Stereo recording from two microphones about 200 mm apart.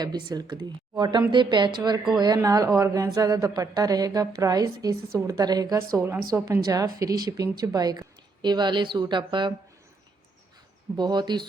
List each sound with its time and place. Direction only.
0.0 s a woman's voice: 20° right (ahead or behind)
10.9 s speech: 20° right (ahead or behind)